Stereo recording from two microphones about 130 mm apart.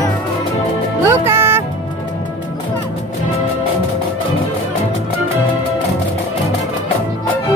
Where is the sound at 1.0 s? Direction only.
20° right (ahead or behind).